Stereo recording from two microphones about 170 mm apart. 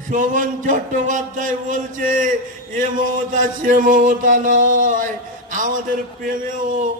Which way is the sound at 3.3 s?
50° right (ahead or behind).